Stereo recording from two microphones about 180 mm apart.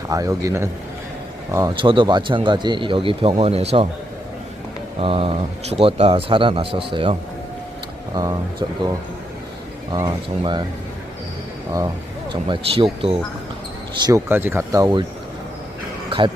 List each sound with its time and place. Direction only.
0.1 s speech: 20° right (ahead or behind); by 3.8 s 35° right (ahead or behind)
4.9 s a man's voice: 30° right (ahead or behind)
9.9 s speech: 25° right (ahead or behind)
12.3 s speech: 25° right (ahead or behind)
14.1 s speech: 10° right (ahead or behind)
16.0 s a sound: 25° right (ahead or behind)